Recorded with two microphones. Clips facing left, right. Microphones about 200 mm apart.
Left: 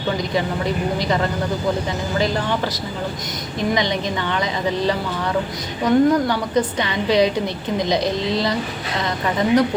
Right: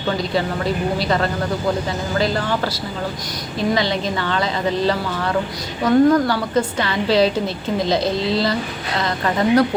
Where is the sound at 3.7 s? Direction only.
15° left (ahead or behind).